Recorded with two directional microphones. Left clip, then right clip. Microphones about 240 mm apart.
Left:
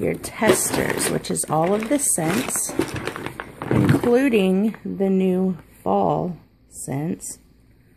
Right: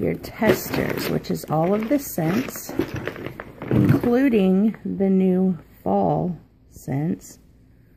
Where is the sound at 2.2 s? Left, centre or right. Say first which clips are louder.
Left 2 dB; left.